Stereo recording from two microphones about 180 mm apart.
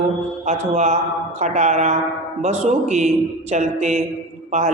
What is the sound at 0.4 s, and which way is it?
A man's voice, 40° right (ahead or behind).